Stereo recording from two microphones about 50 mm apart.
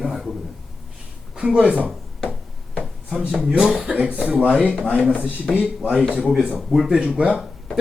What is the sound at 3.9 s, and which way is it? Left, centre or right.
Speech, right.